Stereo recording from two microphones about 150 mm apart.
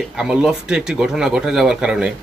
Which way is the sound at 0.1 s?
5° right (ahead or behind).